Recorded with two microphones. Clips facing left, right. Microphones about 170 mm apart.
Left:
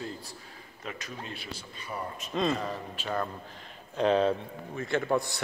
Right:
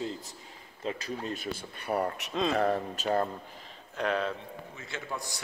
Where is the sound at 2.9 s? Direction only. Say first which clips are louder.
Right 4 dB; 35° right (ahead or behind).